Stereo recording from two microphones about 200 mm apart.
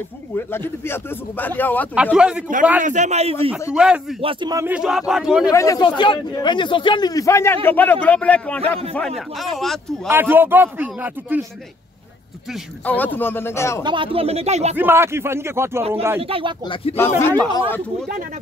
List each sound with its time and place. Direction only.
0.4 s speech: 10° left (ahead or behind)
2.1 s a man's voice: 5° right (ahead or behind)
2.8 s speech: 35° right (ahead or behind)
3.7 s a man's voice: 5° right (ahead or behind)
4.2 s a man's voice: 25° right (ahead or behind); by 5.5 s 5° right (ahead or behind)
5.5 s a man's voice: 15° left (ahead or behind)
10.0 s speech: 10° right (ahead or behind)
12.8 s speech: 10° left (ahead or behind)
13.8 s speech: 25° right (ahead or behind)
14.8 s speech: 10° right (ahead or behind)
16.2 s speech: 25° right (ahead or behind)
16.6 s speech: 25° left (ahead or behind)
16.9 s speech: 10° left (ahead or behind)